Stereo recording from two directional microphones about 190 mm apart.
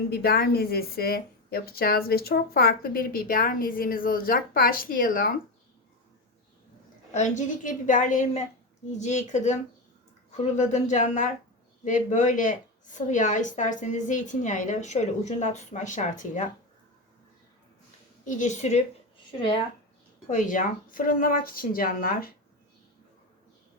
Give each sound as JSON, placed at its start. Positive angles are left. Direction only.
{"t": 0.1, "sound": "a woman's voice", "side_deg": 55}
{"t": 7.1, "sound": "a woman's voice", "side_deg": 40}
{"t": 18.3, "sound": "a woman's voice", "side_deg": 40}
{"t": 20.2, "sound": "a woman's voice", "side_deg": 40}